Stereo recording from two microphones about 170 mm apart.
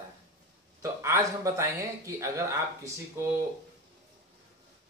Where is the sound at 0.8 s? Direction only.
15° right (ahead or behind).